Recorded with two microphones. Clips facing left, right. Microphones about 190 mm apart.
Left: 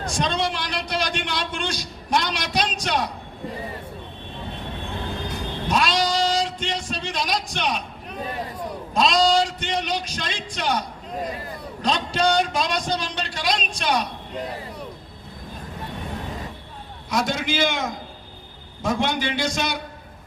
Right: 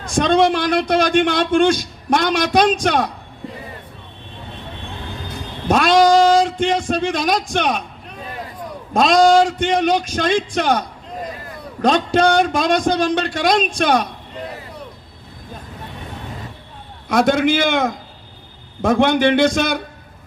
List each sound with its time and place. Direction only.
0.0 s a man's voice: 50° right (ahead or behind)
5.6 s speech: 50° right (ahead or behind)
8.9 s a man's voice: 50° right (ahead or behind)
17.1 s a man's voice: 55° right (ahead or behind)